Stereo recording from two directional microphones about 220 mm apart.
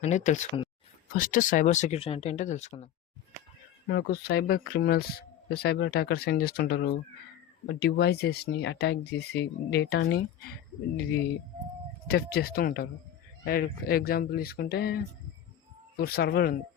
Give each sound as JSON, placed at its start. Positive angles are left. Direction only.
{"t": 0.0, "sound": "speech", "side_deg": 35}
{"t": 3.8, "sound": "speech", "side_deg": 45}
{"t": 12.0, "sound": "speech", "side_deg": 45}